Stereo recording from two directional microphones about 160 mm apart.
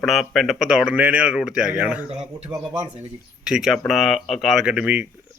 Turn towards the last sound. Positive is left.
turn(degrees=-5)  # may be behind; listen again after turning